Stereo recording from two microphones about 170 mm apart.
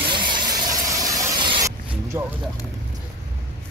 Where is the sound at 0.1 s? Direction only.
25° right (ahead or behind).